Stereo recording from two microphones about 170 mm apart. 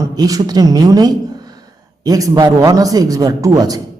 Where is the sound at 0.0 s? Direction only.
20° right (ahead or behind).